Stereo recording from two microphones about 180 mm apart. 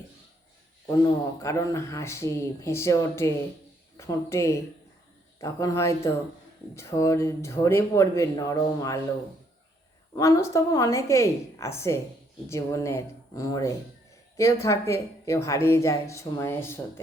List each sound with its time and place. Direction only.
1.4 s a woman's voice: 15° left (ahead or behind)
10.2 s a woman's voice: 20° left (ahead or behind)